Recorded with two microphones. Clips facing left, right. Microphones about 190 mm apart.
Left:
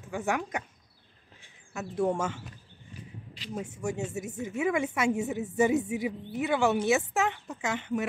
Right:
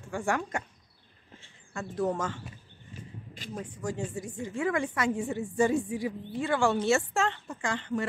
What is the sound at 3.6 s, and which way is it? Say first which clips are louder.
A woman's voice: left 1 dB; 25° left (ahead or behind).